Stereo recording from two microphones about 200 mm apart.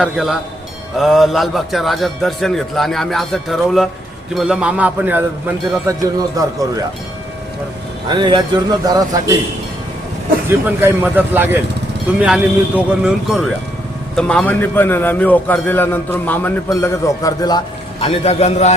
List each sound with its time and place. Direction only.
0.0 s a man's voice: 5° right (ahead or behind)
8.1 s speech: 20° right (ahead or behind)
10.7 s a man's voice: 10° right (ahead or behind); by 17.6 s 20° left (ahead or behind)
18.0 s a man's voice: 30° left (ahead or behind)